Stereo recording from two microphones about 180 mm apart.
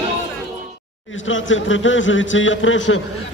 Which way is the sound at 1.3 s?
90° left.